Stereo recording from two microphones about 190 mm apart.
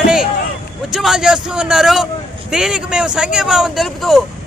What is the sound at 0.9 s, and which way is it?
Speech, centre (ahead or behind).